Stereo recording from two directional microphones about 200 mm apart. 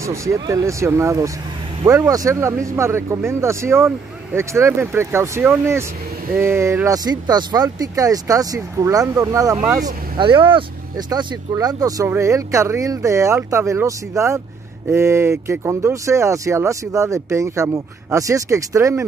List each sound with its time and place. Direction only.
0.0 s speech: 15° right (ahead or behind)